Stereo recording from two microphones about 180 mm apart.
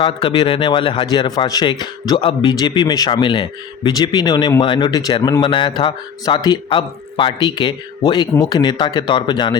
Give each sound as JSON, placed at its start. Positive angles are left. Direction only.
{"t": 0.0, "sound": "speech", "side_deg": 30}